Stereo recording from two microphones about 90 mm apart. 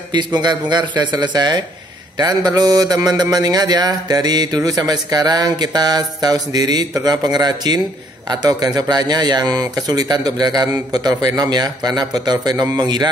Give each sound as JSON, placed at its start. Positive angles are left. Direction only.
{"t": 0.1, "sound": "a man's voice", "side_deg": -55}